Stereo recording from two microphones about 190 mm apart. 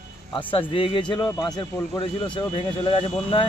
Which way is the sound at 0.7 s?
30° left (ahead or behind).